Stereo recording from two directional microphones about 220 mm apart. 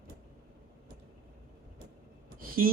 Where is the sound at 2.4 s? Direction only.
40° right (ahead or behind).